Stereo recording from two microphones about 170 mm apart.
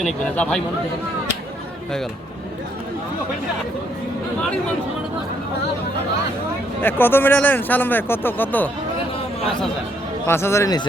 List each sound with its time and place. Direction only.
0.0 s speech: 5° left (ahead or behind)
6.8 s speech: 10° left (ahead or behind)
10.2 s speech: 15° left (ahead or behind)